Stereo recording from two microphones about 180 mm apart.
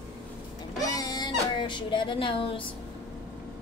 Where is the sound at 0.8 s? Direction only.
20° left (ahead or behind).